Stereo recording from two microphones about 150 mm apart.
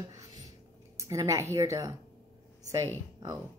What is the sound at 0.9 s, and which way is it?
Speech, 20° right (ahead or behind).